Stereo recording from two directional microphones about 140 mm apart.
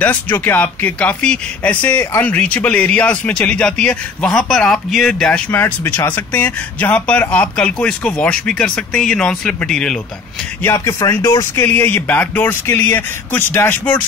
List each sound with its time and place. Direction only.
0.0 s speech: 10° left (ahead or behind)
10.7 s speech: 25° left (ahead or behind)
11.5 s speech: 10° left (ahead or behind)